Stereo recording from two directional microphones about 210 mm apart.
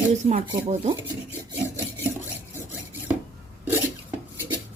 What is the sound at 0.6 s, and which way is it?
Speech, 30° right (ahead or behind).